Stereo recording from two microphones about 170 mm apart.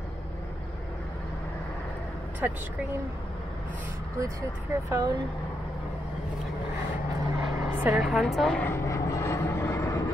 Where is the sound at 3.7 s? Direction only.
15° right (ahead or behind).